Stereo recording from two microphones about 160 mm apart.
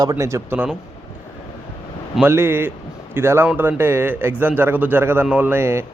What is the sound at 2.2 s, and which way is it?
Speech, 15° right (ahead or behind).